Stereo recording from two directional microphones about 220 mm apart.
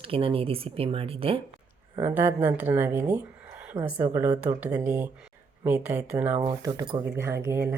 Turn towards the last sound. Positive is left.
turn(degrees=-10)  # may be behind; listen again after turning